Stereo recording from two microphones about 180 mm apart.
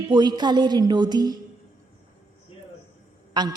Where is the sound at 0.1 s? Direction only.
25° right (ahead or behind).